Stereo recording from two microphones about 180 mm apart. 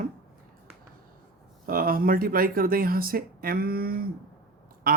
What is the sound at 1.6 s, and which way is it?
Speech, 50° right (ahead or behind).